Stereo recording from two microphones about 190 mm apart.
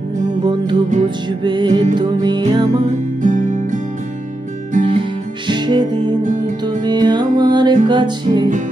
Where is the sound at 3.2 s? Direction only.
40° right (ahead or behind).